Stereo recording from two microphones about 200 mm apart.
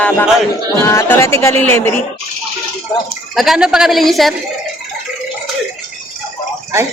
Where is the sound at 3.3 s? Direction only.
Centre (ahead or behind).